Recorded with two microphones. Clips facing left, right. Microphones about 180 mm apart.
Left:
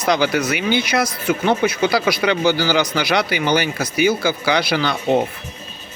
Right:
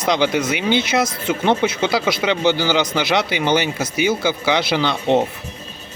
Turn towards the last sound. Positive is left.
turn(degrees=-25)  # may be behind; listen again after turning